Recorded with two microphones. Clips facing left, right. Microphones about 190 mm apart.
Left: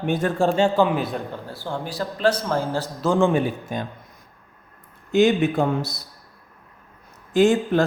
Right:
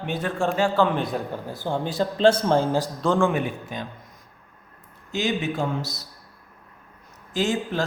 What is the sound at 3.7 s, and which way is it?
Speech, 45° left (ahead or behind).